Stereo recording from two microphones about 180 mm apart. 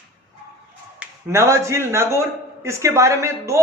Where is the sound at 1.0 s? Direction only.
15° right (ahead or behind).